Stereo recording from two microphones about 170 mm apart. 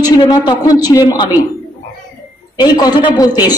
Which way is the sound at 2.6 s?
25° left (ahead or behind).